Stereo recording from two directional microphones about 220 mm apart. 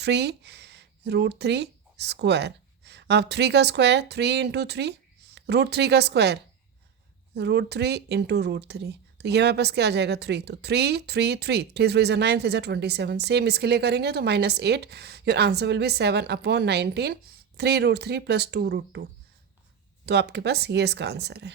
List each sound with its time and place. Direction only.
0.0 s speech: 50° right (ahead or behind)
20.1 s speech: 50° right (ahead or behind)